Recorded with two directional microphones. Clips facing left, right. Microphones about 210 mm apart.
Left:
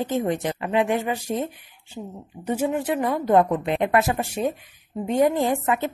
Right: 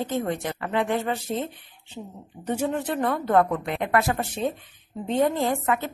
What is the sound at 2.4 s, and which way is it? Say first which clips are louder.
Speech: left 2 dB; 10° left (ahead or behind).